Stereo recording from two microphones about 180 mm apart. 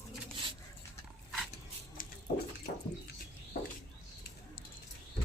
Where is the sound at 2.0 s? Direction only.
50° left (ahead or behind).